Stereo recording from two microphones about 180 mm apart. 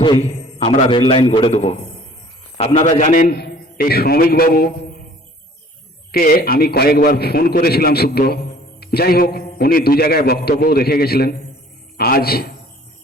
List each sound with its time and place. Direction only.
0.2 s a man's voice: 35° left (ahead or behind)
3.0 s a man's voice: 50° left (ahead or behind)
6.1 s a man's voice: 55° left (ahead or behind)